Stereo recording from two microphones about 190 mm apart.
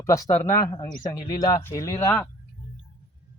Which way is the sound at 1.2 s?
20° left (ahead or behind).